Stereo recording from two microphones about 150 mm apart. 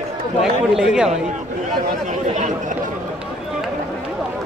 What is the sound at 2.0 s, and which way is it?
Speech, 55° right (ahead or behind).